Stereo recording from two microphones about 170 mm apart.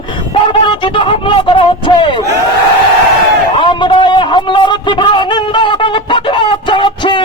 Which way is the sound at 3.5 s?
30° left (ahead or behind).